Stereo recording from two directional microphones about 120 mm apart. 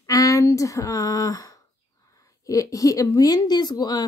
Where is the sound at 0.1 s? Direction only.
30° left (ahead or behind).